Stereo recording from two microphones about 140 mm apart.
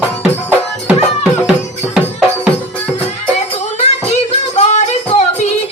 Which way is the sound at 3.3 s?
50° left (ahead or behind).